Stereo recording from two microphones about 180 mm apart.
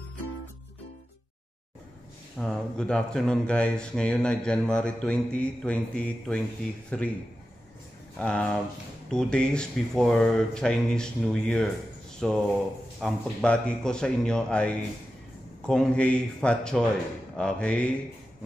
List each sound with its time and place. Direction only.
2.3 s speech: 5° left (ahead or behind)
6.9 s mantra: 5° left (ahead or behind)
8.2 s mantra: 5° left (ahead or behind)
9.1 s speech: 5° left (ahead or behind)
17.4 s mantra: 5° left (ahead or behind)